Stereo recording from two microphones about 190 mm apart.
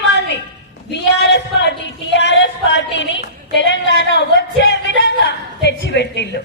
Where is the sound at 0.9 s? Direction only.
65° left (ahead or behind).